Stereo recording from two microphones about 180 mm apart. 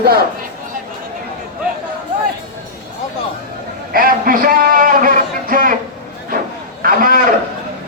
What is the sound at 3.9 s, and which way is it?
A man's voice, 50° right (ahead or behind).